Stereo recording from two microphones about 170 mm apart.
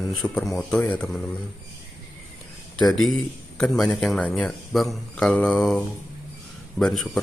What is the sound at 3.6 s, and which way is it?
A man's voice, centre (ahead or behind).